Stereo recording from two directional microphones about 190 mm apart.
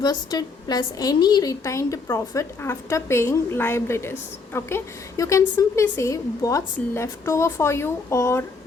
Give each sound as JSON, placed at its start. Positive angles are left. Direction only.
{"t": 0.0, "sound": "a woman's voice", "side_deg": 20}